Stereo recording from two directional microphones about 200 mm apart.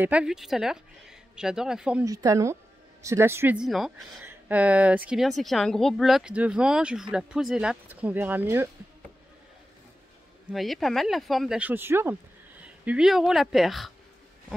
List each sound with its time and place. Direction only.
0.0 s speech: 5° right (ahead or behind)
2.0 s a woman's voice: 15° right (ahead or behind)
10.5 s speech: centre (ahead or behind)